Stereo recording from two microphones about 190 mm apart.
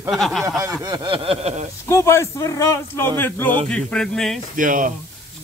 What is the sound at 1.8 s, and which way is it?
A man's voice, 15° left (ahead or behind).